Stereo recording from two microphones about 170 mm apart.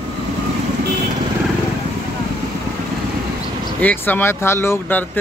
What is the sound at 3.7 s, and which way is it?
Speech, 10° left (ahead or behind).